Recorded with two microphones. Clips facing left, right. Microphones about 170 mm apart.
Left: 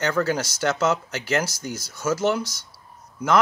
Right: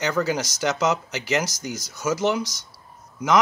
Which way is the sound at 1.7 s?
30° left (ahead or behind).